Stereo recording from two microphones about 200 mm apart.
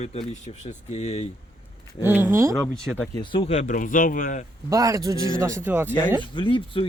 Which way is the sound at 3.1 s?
25° left (ahead or behind).